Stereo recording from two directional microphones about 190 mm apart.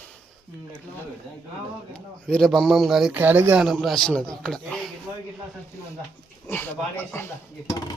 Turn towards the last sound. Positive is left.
turn(degrees=15)  # may be behind; listen again after turning